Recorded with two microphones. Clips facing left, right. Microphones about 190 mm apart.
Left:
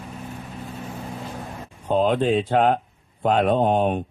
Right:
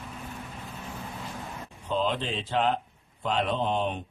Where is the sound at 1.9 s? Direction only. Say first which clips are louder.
Left 9 dB; 50° left (ahead or behind).